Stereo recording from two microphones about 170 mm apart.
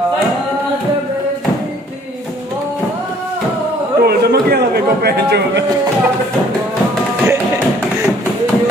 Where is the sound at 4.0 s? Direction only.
70° right (ahead or behind).